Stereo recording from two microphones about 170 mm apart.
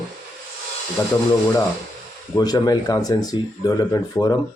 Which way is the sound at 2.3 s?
25° left (ahead or behind).